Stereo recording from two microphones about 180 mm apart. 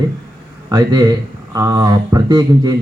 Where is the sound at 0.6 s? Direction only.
25° right (ahead or behind).